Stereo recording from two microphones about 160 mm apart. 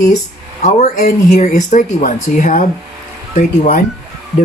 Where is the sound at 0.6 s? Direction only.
45° left (ahead or behind).